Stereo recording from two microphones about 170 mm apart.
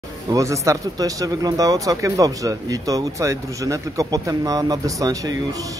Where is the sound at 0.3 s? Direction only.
20° right (ahead or behind).